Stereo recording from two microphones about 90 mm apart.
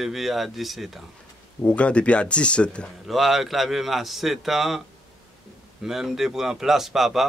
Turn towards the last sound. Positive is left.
turn(degrees=0)  # may be behind; listen again after turning